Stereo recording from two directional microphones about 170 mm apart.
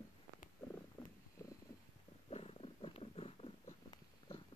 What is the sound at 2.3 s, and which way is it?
Purr, 35° left (ahead or behind).